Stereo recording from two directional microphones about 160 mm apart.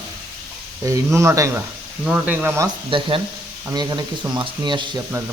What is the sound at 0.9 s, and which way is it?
Speech, 20° right (ahead or behind).